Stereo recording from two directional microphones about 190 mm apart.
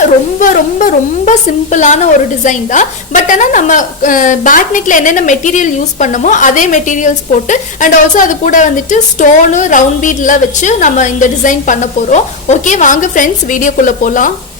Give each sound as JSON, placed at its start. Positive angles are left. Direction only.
{"t": 0.3, "sound": "a woman's voice", "side_deg": 45}